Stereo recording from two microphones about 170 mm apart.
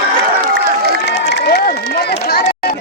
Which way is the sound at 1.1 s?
80° left.